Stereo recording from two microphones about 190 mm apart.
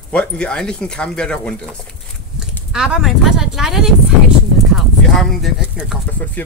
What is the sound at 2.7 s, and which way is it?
Speech, 5° right (ahead or behind).